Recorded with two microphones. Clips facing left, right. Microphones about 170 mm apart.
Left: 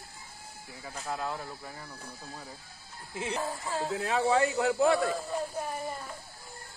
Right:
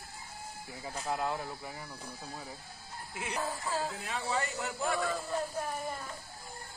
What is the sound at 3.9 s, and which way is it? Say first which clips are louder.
A man's voice: left 9 dB; 90° left.